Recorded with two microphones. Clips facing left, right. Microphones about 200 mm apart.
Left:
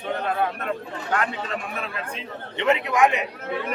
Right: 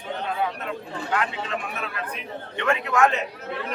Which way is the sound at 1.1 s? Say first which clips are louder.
Left 1 dB; 45° left (ahead or behind).